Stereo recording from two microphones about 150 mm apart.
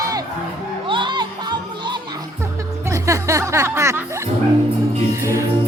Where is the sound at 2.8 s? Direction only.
20° right (ahead or behind).